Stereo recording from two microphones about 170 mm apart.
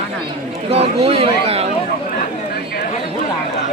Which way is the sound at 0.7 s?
35° right (ahead or behind).